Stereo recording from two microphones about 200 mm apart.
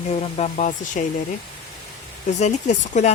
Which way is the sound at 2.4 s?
35° left (ahead or behind).